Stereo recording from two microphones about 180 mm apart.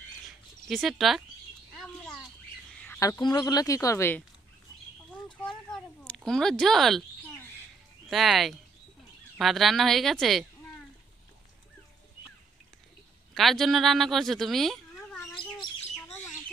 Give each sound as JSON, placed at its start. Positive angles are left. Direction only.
{"t": 0.7, "sound": "speech", "side_deg": 0}
{"t": 2.8, "sound": "speech", "side_deg": 15}
{"t": 5.4, "sound": "a sound", "side_deg": 5}
{"t": 8.1, "sound": "speech", "side_deg": 0}
{"t": 13.3, "sound": "speech", "side_deg": 0}
{"t": 15.3, "sound": "bird", "side_deg": 25}